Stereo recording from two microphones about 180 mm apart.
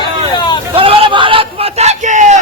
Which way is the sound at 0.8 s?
30° right (ahead or behind).